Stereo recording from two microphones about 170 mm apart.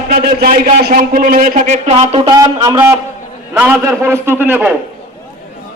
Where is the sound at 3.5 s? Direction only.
10° right (ahead or behind).